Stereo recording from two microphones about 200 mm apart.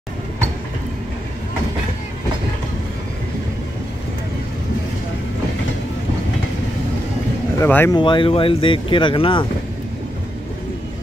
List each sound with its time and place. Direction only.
7.5 s speech: 10° left (ahead or behind)
8.0 s speech: 25° left (ahead or behind)